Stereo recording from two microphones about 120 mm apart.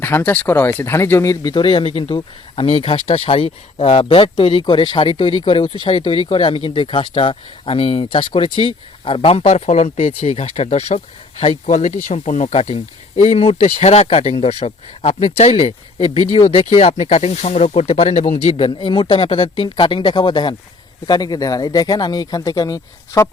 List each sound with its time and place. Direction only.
0.0 s speech: 15° left (ahead or behind)
1.4 s speech: 40° left (ahead or behind)